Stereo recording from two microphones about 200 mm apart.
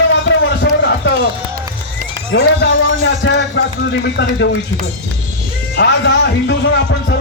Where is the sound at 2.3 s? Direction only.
65° left (ahead or behind).